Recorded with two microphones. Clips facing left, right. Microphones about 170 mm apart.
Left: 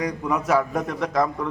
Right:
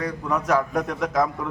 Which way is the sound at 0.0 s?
10° left (ahead or behind).